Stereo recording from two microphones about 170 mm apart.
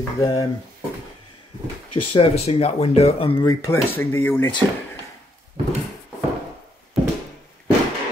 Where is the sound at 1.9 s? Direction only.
35° left (ahead or behind).